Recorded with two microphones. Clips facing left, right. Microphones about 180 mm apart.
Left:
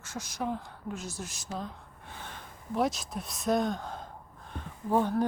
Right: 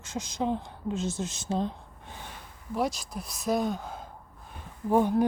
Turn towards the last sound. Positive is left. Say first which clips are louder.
# right 3 dB
turn(degrees=-10)  # may be behind; listen again after turning